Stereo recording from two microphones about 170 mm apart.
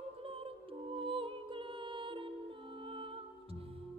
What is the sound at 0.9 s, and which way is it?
Music, 30° right (ahead or behind).